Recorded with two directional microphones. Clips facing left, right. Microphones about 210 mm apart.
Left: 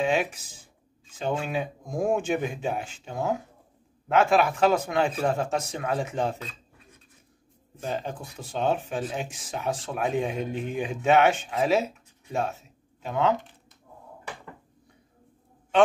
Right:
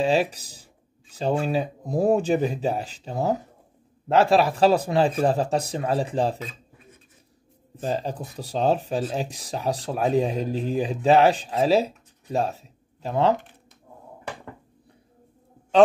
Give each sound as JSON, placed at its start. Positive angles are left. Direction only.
{"t": 0.0, "sound": "speech", "side_deg": -35}
{"t": 7.8, "sound": "speech", "side_deg": -35}